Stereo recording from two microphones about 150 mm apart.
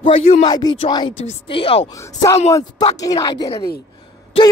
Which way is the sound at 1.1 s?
40° left (ahead or behind).